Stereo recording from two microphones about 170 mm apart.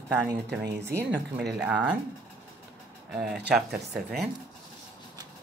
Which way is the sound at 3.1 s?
5° right (ahead or behind).